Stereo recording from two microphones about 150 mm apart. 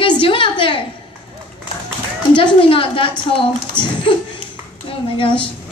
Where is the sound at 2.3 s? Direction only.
35° left (ahead or behind).